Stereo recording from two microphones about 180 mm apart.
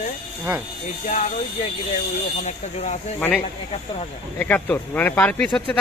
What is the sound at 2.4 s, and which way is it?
Speech, 40° left (ahead or behind).